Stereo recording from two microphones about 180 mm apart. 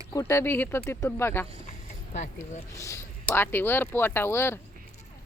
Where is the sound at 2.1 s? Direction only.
40° left (ahead or behind).